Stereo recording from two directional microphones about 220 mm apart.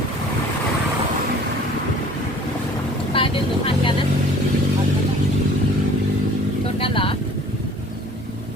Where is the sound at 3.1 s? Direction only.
25° left (ahead or behind).